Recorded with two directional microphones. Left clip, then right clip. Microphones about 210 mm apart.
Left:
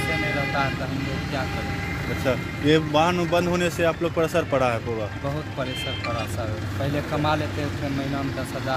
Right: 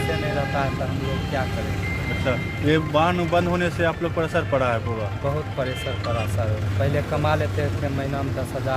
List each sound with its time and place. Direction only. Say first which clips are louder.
2.2 s speech: left 1 dB; 40° left (ahead or behind)